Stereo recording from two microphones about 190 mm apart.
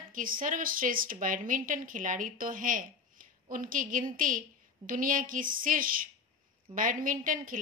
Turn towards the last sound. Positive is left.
turn(degrees=-45)  # may be behind; listen again after turning